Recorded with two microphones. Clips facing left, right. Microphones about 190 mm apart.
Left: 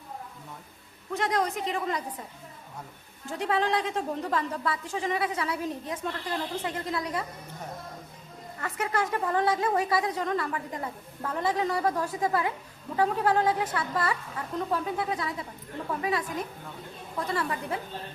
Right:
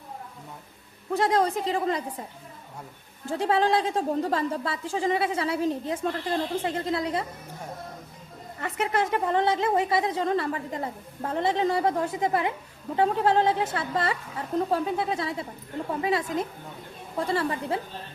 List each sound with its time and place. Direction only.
1.1 s a woman's voice: 30° right (ahead or behind)
3.2 s a woman's voice: 30° right (ahead or behind)
8.6 s a woman's voice: 25° right (ahead or behind)